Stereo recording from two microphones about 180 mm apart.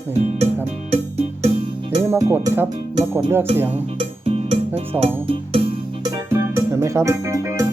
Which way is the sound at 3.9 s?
35° right (ahead or behind).